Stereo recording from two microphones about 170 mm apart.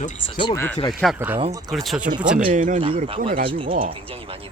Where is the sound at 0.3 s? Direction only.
25° left (ahead or behind).